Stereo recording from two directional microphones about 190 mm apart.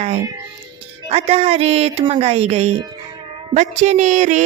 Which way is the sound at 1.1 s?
35° right (ahead or behind).